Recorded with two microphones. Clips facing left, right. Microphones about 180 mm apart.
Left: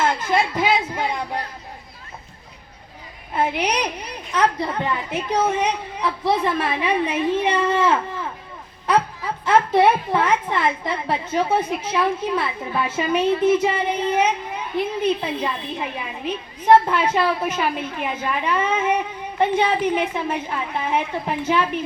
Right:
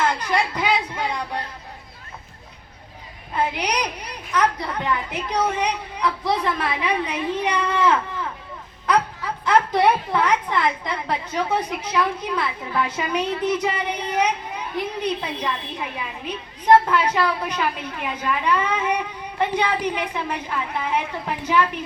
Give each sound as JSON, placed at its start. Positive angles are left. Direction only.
{"t": 0.3, "sound": "speech", "side_deg": 20}
{"t": 3.3, "sound": "a woman's voice", "side_deg": 25}
{"t": 8.9, "sound": "laughter", "side_deg": 25}
{"t": 10.2, "sound": "a woman's voice", "side_deg": 25}